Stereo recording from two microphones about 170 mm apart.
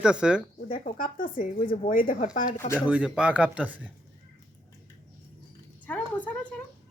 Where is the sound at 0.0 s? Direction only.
5° right (ahead or behind).